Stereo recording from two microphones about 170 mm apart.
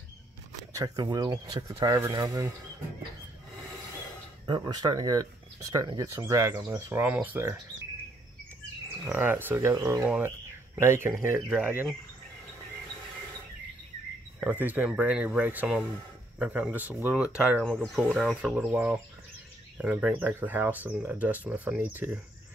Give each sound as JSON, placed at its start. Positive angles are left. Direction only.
{"t": 0.6, "sound": "speech", "side_deg": -20}
{"t": 1.8, "sound": "speech", "side_deg": -15}
{"t": 4.5, "sound": "speech", "side_deg": -25}
{"t": 9.0, "sound": "speech", "side_deg": -10}
{"t": 11.1, "sound": "speech", "side_deg": 0}
{"t": 11.6, "sound": "speech", "side_deg": -10}
{"t": 14.4, "sound": "speech", "side_deg": -10}